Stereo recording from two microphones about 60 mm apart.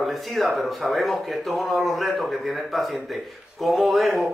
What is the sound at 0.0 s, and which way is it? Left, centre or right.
Speech, centre.